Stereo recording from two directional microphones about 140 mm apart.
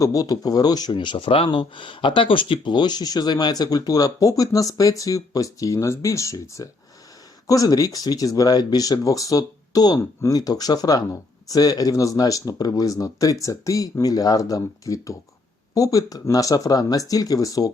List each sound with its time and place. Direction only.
0.0 s speech: 25° left (ahead or behind)